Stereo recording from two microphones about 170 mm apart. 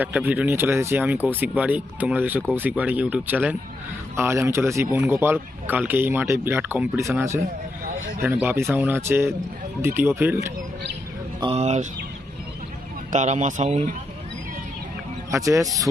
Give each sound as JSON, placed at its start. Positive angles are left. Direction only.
{"t": 0.0, "sound": "speech", "side_deg": -10}
{"t": 11.3, "sound": "speech", "side_deg": -35}
{"t": 13.1, "sound": "speech", "side_deg": -45}
{"t": 15.3, "sound": "speech", "side_deg": -20}